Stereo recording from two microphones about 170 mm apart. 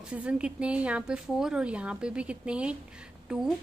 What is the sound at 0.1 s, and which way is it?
A woman's voice, 5° right (ahead or behind).